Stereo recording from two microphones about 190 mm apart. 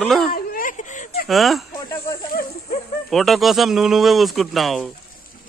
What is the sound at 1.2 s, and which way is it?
Speech, centre (ahead or behind).